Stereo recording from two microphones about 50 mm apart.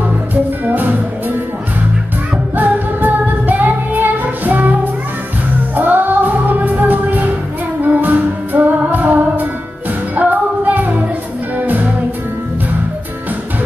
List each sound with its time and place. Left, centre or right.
0.3 s music: right
2.5 s music: right
5.8 s music: right